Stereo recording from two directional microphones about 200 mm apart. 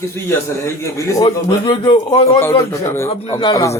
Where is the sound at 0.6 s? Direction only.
15° left (ahead or behind).